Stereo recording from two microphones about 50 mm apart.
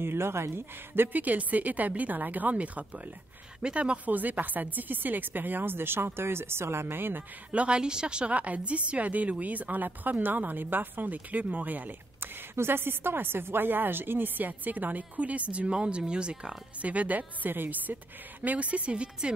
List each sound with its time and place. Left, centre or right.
0.0 s a woman's voice: right
1.2 s speech: right
7.5 s a woman's voice: right
12.5 s a woman's voice: right